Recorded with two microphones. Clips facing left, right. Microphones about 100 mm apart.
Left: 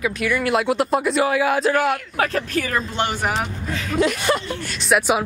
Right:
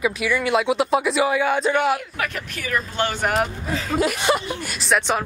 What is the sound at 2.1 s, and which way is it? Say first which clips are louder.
Speech: left 7 dB; 35° left (ahead or behind).